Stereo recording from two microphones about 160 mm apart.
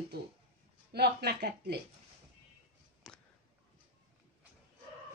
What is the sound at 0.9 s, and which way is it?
Speech, 90° right.